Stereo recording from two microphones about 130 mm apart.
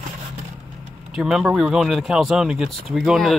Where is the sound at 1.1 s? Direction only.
5° right (ahead or behind).